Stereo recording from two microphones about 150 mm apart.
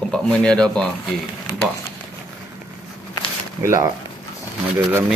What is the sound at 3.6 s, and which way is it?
Speech, 25° right (ahead or behind).